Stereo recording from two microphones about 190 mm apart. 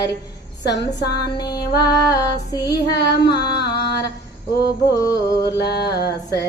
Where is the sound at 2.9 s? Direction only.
60° left (ahead or behind).